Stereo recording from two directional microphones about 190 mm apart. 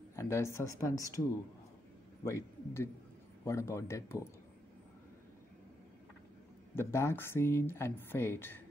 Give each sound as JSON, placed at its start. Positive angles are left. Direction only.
{"t": 0.1, "sound": "speech", "side_deg": 15}
{"t": 2.2, "sound": "a man's voice", "side_deg": 15}
{"t": 6.7, "sound": "speech", "side_deg": 15}